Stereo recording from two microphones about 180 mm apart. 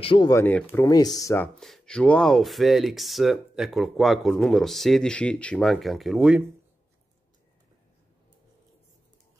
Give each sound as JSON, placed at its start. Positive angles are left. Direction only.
{"t": 0.0, "sound": "speech", "side_deg": 30}
{"t": 0.3, "sound": "speech", "side_deg": 10}
{"t": 1.6, "sound": "speech", "side_deg": 5}